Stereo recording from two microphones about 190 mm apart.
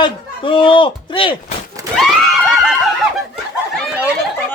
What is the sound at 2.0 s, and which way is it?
Screaming, centre (ahead or behind).